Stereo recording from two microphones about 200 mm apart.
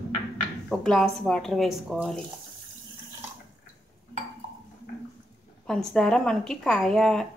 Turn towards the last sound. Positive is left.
turn(degrees=0)  # may be behind; listen again after turning